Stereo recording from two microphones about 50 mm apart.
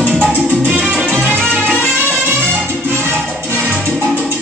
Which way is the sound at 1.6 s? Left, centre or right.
Left.